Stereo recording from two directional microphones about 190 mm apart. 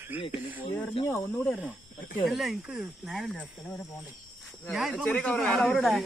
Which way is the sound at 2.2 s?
Centre (ahead or behind).